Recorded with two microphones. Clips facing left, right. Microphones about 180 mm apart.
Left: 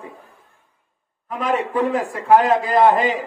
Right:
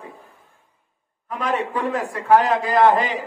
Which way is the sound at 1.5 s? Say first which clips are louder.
Left 4 dB; 20° left (ahead or behind).